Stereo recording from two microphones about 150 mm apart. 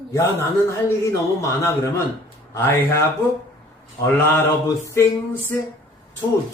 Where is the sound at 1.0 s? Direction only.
20° left (ahead or behind).